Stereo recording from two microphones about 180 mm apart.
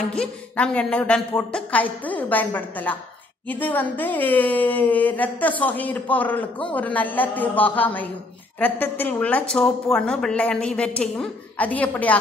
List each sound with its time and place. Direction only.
0.1 s a woman's voice: 5° left (ahead or behind)